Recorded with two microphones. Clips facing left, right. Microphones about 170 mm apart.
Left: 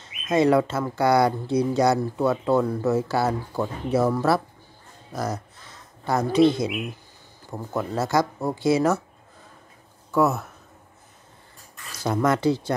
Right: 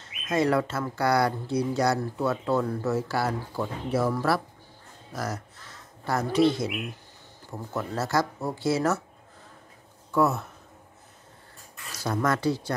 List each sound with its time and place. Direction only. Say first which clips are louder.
0.3 s speech: left 5 dB; 20° left (ahead or behind)
7.7 s speech: left 4 dB; 15° left (ahead or behind)
10.1 s speech: left 2 dB; 5° left (ahead or behind)
12.0 s speech: left 4 dB; 20° left (ahead or behind)